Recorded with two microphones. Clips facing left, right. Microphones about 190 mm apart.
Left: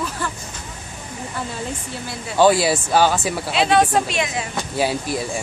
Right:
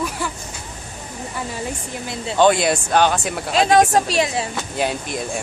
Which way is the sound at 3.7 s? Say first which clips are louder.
Right 2 dB; 45° right (ahead or behind).